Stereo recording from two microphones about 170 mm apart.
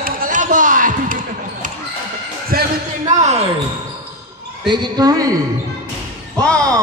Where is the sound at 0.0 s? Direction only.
50° right (ahead or behind).